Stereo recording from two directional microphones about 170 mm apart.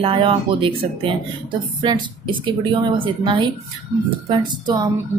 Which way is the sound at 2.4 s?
30° right (ahead or behind).